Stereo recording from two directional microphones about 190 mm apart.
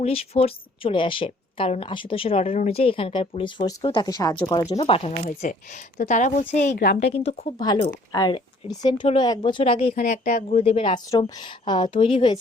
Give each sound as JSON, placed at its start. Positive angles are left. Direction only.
{"t": 0.0, "sound": "a woman's voice", "side_deg": 30}
{"t": 7.6, "sound": "a woman's voice", "side_deg": 20}